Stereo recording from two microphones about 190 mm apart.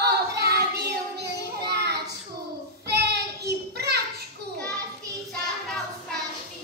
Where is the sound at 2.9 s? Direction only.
60° right (ahead or behind).